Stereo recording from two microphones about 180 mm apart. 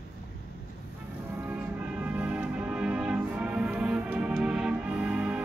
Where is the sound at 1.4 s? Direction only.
10° right (ahead or behind).